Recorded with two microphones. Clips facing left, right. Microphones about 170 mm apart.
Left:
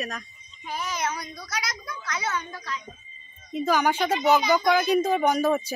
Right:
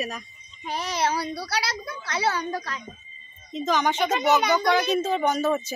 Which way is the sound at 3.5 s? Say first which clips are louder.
Left 1 dB; 10° left (ahead or behind).